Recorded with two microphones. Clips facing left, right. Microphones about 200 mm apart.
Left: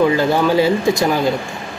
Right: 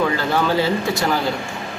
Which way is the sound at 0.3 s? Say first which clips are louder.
Left 4 dB; 15° left (ahead or behind).